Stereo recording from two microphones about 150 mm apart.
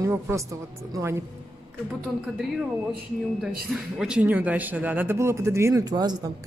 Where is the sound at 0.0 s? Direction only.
15° right (ahead or behind).